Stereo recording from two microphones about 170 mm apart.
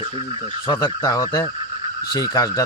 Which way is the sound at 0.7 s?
25° left (ahead or behind).